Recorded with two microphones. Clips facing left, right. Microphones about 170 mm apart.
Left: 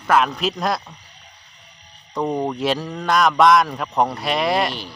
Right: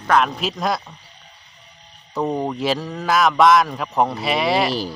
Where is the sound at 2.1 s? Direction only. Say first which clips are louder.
Even; centre (ahead or behind).